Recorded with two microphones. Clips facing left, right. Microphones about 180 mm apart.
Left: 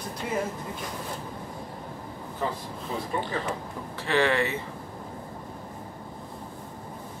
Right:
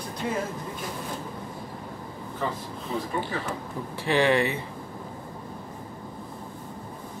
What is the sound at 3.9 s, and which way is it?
Speech, 15° right (ahead or behind).